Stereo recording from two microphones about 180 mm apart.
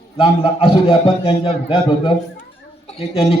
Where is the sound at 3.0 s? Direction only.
30° left (ahead or behind).